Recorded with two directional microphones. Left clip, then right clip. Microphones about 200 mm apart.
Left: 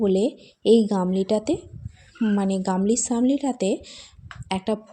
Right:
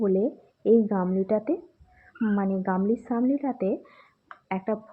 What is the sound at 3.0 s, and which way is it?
Speech, 40° left (ahead or behind).